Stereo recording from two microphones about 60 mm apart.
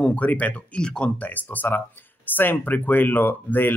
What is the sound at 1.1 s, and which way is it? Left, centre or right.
Speech, left.